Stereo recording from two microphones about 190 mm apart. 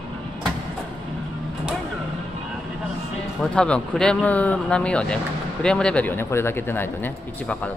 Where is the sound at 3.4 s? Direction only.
5° left (ahead or behind).